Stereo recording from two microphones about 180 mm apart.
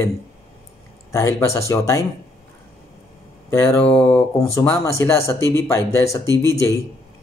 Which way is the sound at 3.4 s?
15° left (ahead or behind).